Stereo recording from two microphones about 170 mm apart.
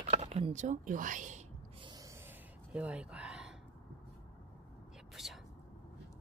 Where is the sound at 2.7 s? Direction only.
5° right (ahead or behind).